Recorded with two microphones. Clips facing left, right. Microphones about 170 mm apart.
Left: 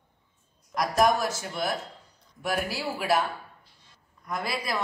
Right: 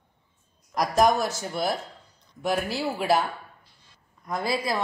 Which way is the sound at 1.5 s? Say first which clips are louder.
Right 5 dB; 30° right (ahead or behind).